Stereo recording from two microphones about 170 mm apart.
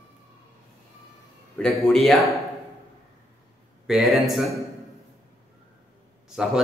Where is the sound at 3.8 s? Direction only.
Centre (ahead or behind).